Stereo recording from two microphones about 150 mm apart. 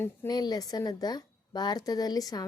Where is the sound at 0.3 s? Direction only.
25° left (ahead or behind).